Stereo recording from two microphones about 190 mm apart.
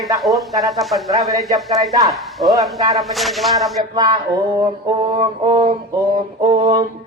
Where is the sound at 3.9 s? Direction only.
25° right (ahead or behind).